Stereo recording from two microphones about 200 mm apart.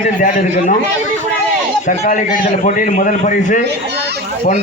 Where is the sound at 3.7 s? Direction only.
55° right (ahead or behind).